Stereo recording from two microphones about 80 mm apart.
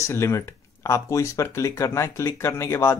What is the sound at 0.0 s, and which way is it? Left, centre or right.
Speech, left.